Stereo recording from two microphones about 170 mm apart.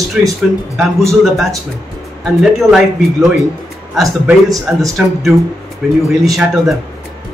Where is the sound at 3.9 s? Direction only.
5° right (ahead or behind).